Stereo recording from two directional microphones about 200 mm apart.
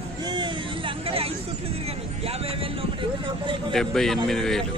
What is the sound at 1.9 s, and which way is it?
Vehicle, 30° right (ahead or behind).